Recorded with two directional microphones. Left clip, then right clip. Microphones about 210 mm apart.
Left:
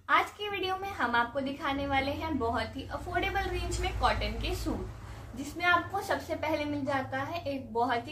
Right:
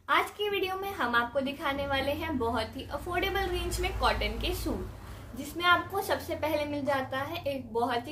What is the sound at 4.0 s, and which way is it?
A woman's voice, 40° right (ahead or behind).